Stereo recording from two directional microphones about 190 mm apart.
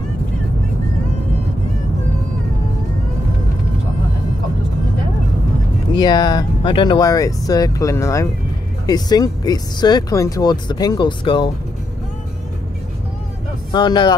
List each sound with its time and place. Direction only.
5.9 s speech: 20° left (ahead or behind)
13.7 s speech: 25° left (ahead or behind)